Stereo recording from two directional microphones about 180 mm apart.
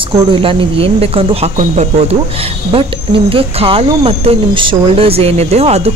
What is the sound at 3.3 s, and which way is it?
Speech, 30° right (ahead or behind).